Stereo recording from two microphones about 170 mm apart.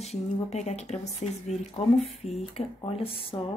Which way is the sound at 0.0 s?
40° left (ahead or behind).